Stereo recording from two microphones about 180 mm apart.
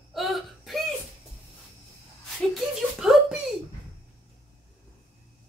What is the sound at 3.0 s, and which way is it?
Speech, centre (ahead or behind).